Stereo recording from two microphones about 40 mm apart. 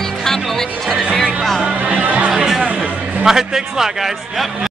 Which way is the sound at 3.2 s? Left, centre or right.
Centre.